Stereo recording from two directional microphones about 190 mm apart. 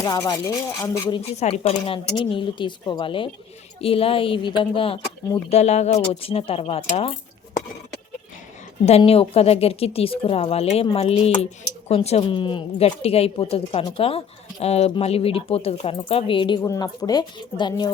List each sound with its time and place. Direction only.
0.0 s speech: 20° left (ahead or behind)
1.4 s a woman's voice: 35° left (ahead or behind)
8.9 s a woman's voice: 30° left (ahead or behind)